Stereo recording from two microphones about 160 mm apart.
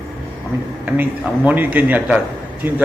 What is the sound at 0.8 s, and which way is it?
Speech, 10° right (ahead or behind).